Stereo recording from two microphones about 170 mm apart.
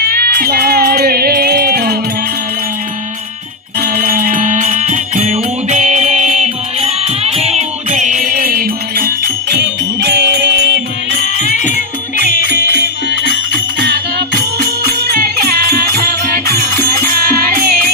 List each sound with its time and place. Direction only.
0.0 s music: 65° right (ahead or behind)
3.8 s music: 55° right (ahead or behind); by 10.6 s 70° right (ahead or behind)
11.3 s music: 45° left (ahead or behind)
12.3 s music: 55° left (ahead or behind)
13.7 s music: 80° right; by 17.7 s 60° right (ahead or behind)